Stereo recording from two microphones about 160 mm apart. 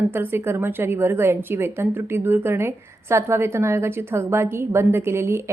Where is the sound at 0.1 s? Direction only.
15° right (ahead or behind).